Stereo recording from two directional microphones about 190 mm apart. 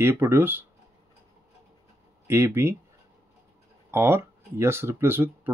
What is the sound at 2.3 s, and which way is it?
Speech, 15° right (ahead or behind).